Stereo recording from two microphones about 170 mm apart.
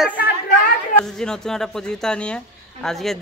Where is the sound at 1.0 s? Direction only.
5° left (ahead or behind).